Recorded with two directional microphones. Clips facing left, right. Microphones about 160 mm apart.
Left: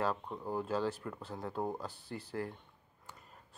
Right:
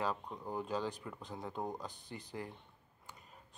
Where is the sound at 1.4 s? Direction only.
5° left (ahead or behind).